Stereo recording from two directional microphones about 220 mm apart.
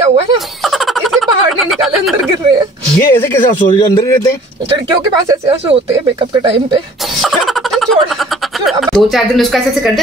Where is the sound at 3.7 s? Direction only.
20° left (ahead or behind).